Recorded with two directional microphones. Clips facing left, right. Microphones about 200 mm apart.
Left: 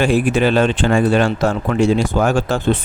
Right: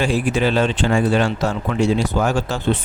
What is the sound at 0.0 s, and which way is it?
Speech, 55° left (ahead or behind).